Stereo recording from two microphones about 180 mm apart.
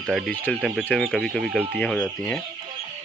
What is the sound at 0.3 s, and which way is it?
Speech, 10° left (ahead or behind).